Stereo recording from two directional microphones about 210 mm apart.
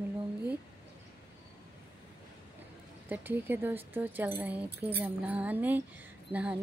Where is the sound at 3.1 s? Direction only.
10° right (ahead or behind).